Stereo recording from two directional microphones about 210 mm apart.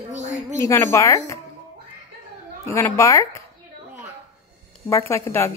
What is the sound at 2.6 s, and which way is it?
Speech, 15° left (ahead or behind).